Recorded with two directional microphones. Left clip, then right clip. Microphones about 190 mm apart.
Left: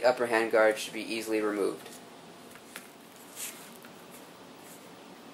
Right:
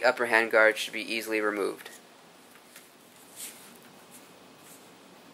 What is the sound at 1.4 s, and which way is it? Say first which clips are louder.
Speech: even; 30° right (ahead or behind).